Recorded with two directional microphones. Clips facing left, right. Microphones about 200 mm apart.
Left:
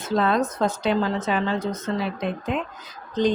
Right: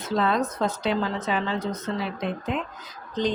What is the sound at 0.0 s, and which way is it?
A woman's voice, 50° left (ahead or behind).